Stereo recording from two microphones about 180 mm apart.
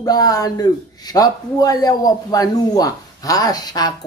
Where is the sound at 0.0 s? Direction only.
20° left (ahead or behind).